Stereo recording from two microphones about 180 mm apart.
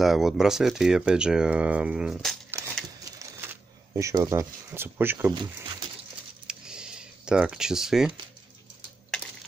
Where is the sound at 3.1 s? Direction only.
20° right (ahead or behind).